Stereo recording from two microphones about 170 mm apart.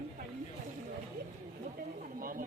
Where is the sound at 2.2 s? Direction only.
55° right (ahead or behind).